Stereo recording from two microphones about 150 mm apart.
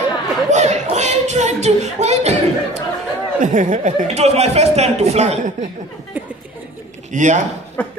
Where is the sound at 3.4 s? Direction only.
60° right (ahead or behind).